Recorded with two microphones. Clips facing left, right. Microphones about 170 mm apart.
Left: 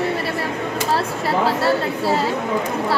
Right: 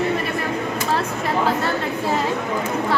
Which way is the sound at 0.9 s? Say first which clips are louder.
Left 2 dB; 35° left (ahead or behind).